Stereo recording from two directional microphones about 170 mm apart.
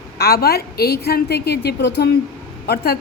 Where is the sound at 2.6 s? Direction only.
70° left (ahead or behind).